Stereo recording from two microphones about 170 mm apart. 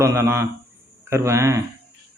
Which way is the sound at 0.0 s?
15° right (ahead or behind).